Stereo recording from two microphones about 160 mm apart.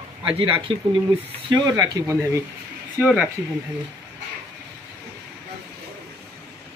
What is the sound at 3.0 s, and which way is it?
Speech, 5° right (ahead or behind).